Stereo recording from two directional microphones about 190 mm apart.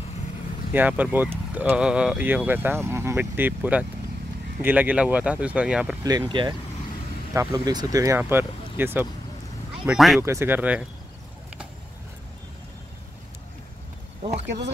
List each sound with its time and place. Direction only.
0.7 s speech: 10° right (ahead or behind)
6.0 s speech: 25° right (ahead or behind); by 10.2 s centre (ahead or behind)
10.2 s speech: 15° right (ahead or behind)